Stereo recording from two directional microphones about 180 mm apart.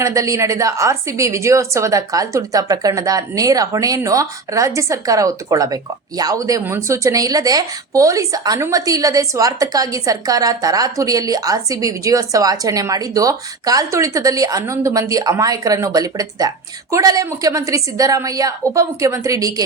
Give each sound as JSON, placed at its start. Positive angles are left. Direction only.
{"t": 0.0, "sound": "a woman's voice", "side_deg": -15}